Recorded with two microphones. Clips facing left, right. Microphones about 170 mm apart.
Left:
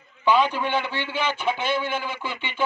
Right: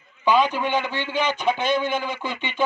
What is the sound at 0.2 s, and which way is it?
A man's voice, 15° right (ahead or behind).